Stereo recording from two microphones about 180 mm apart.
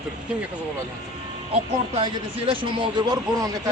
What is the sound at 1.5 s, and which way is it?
Speech, 30° right (ahead or behind).